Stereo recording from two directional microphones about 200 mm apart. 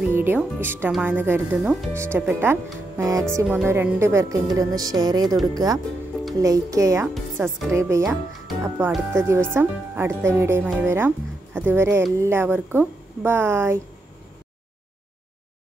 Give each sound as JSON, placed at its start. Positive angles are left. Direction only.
{"t": 0.1, "sound": "speech", "side_deg": -10}